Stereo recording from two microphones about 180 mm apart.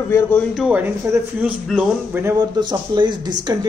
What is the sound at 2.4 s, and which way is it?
Speech, 25° right (ahead or behind).